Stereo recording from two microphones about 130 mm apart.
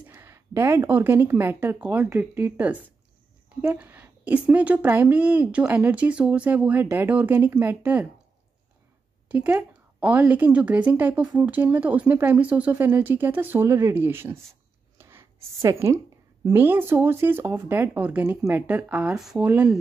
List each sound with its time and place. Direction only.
0.1 s speech: 20° right (ahead or behind)
9.3 s speech: 15° right (ahead or behind)
15.0 s a sound: 20° right (ahead or behind)
16.4 s speech: 15° right (ahead or behind)